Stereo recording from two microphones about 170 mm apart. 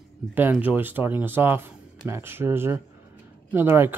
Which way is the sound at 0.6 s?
10° right (ahead or behind).